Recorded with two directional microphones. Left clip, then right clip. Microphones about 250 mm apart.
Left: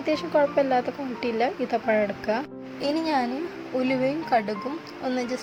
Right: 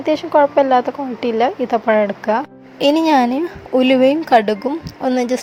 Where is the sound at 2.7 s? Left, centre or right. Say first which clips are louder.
Right 12 dB; right.